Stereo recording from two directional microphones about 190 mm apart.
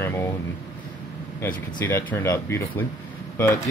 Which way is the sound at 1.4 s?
15° left (ahead or behind).